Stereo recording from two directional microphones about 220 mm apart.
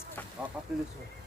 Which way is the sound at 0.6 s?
5° right (ahead or behind).